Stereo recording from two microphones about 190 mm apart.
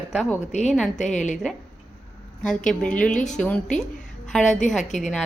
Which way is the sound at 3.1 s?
40° left (ahead or behind).